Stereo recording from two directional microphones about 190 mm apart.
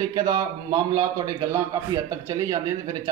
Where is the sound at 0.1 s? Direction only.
20° right (ahead or behind).